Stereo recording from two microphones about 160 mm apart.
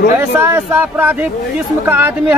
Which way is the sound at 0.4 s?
15° right (ahead or behind).